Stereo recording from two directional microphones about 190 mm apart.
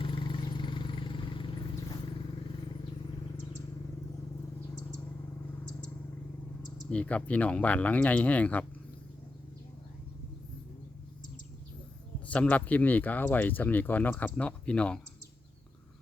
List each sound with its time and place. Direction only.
0.0 s vehicle: 25° left (ahead or behind)
6.9 s speech: 5° left (ahead or behind)
12.3 s speech: 5° left (ahead or behind)